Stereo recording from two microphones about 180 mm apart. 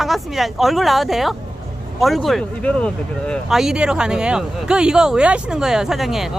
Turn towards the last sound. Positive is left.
turn(degrees=0)  # may be behind; listen again after turning